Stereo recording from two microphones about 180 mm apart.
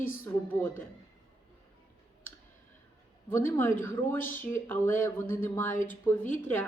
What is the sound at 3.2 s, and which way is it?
Speech, 10° left (ahead or behind).